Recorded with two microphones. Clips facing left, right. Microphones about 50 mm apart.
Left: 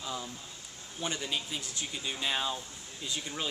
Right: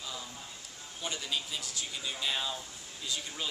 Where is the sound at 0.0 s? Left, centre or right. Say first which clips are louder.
Left 4 dB; centre.